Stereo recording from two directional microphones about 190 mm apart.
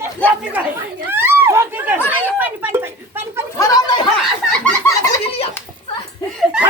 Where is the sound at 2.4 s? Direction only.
10° right (ahead or behind).